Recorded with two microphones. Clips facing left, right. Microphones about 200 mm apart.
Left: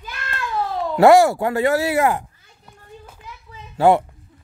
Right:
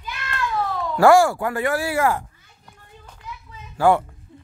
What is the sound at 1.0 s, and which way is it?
Speech, 20° left (ahead or behind).